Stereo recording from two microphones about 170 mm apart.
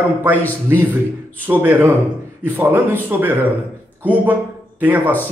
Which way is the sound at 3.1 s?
10° right (ahead or behind).